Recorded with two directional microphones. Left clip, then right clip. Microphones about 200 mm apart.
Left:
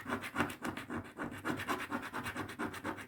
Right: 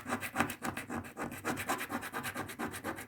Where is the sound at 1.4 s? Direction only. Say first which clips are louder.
Right 2 dB; 15° right (ahead or behind).